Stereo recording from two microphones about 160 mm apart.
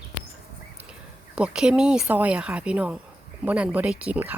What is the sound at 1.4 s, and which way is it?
A woman's voice, 5° right (ahead or behind).